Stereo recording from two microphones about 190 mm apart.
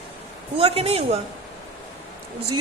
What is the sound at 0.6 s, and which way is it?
Speech, 30° right (ahead or behind).